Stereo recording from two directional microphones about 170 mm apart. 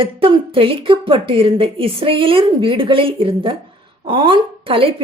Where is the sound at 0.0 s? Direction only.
30° right (ahead or behind).